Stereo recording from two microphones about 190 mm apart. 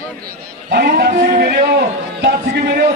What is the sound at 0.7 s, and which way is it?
A man's voice, 55° right (ahead or behind).